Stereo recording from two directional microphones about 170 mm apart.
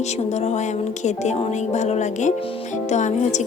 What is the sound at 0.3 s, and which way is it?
Speech, 40° left (ahead or behind).